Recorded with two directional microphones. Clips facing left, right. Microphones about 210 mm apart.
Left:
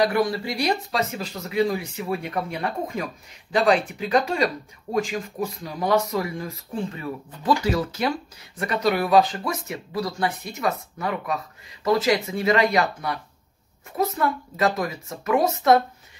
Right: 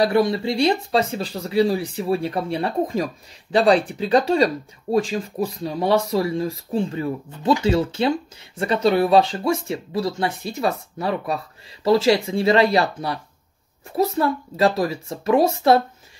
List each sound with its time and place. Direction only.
0.0 s speech: 25° right (ahead or behind)